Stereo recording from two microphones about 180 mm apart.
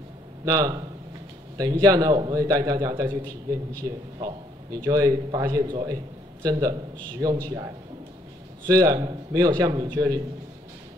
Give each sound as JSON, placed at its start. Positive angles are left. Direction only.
{"t": 0.5, "sound": "a man's voice", "side_deg": -20}
{"t": 4.8, "sound": "a man's voice", "side_deg": -20}